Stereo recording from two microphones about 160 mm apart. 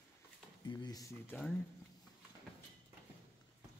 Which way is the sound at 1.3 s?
5° left (ahead or behind).